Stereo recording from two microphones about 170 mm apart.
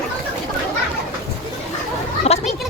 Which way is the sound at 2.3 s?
35° left (ahead or behind).